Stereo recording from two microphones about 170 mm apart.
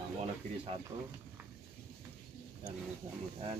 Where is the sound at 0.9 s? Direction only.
30° right (ahead or behind).